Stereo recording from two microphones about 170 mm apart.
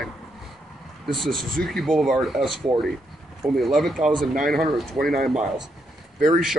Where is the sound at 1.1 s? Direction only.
Centre (ahead or behind).